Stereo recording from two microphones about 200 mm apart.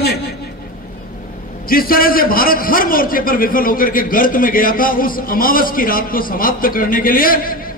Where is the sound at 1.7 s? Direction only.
45° left (ahead or behind).